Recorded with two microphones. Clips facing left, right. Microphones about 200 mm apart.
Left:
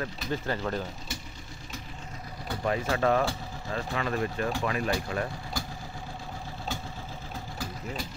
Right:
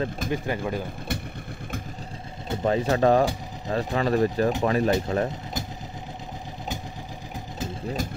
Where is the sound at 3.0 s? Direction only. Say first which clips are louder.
Right 6 dB; 35° right (ahead or behind).